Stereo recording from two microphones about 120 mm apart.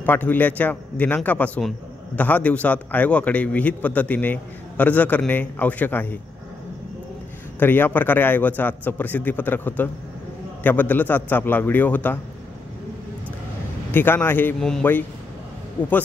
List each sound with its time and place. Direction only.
0.0 s a man's voice: 15° left (ahead or behind)
7.5 s a man's voice: 15° left (ahead or behind)
13.9 s a man's voice: 15° left (ahead or behind)
14.6 s a man's voice: 5° left (ahead or behind)